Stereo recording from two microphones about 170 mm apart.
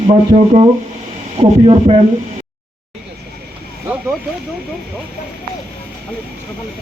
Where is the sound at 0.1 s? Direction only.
35° right (ahead or behind).